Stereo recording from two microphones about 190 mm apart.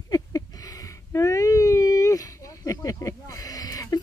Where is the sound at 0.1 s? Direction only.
20° left (ahead or behind).